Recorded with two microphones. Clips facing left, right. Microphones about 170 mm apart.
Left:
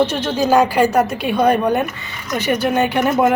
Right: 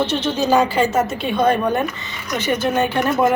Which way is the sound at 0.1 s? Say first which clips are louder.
Left 1 dB; 10° left (ahead or behind).